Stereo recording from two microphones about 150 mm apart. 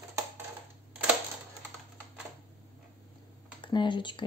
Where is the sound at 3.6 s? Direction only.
30° left (ahead or behind).